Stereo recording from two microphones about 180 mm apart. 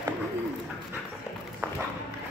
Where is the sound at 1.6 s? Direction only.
15° right (ahead or behind).